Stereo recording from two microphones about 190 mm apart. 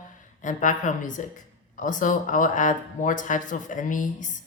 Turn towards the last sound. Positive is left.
turn(degrees=45)  # may be behind; listen again after turning